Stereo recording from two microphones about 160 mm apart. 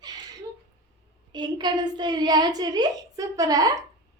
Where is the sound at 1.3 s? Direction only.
25° right (ahead or behind).